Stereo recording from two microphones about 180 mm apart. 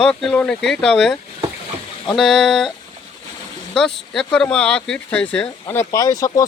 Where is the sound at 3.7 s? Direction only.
Centre (ahead or behind).